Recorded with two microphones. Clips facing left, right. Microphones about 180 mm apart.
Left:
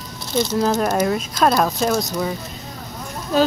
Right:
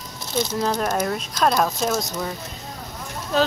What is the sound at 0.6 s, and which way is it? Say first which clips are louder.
Speech: left 5 dB; 5° left (ahead or behind).